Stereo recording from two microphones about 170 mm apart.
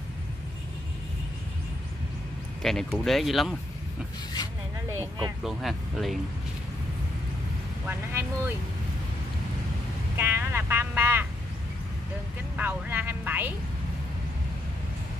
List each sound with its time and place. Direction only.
2.6 s speech: centre (ahead or behind)
5.4 s speech: centre (ahead or behind)
8.1 s speech: 15° right (ahead or behind)
10.1 s speech: 15° right (ahead or behind)
12.5 s speech: 10° right (ahead or behind)